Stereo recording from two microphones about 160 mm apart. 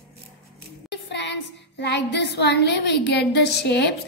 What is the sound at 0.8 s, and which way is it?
Music, 90° left.